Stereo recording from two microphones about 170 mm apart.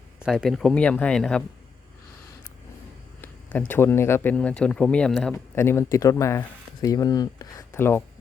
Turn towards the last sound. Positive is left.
turn(degrees=15)  # may be behind; listen again after turning